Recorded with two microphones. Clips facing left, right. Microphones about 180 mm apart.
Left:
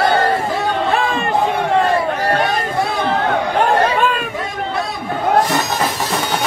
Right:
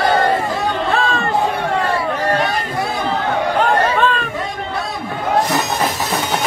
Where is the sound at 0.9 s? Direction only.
15° left (ahead or behind).